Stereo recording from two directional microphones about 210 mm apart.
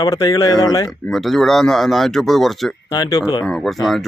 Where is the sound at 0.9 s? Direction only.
Centre (ahead or behind).